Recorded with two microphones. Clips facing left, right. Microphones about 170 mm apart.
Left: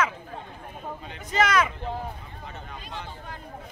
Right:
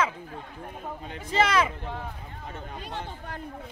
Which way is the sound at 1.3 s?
30° right (ahead or behind).